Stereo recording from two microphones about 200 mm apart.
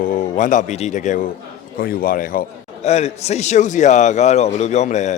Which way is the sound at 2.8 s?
35° left (ahead or behind).